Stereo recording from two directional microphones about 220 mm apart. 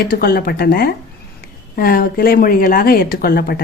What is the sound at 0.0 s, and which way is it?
A woman's voice, 45° left (ahead or behind).